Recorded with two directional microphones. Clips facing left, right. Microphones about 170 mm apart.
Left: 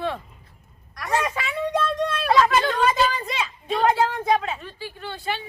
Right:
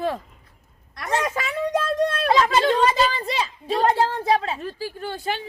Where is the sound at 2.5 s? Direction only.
30° right (ahead or behind); by 5.4 s 45° right (ahead or behind).